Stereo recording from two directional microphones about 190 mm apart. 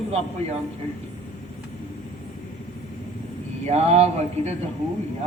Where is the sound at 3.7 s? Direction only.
35° right (ahead or behind).